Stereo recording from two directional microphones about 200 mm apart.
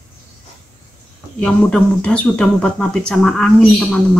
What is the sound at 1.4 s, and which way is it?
Speech, 5° left (ahead or behind).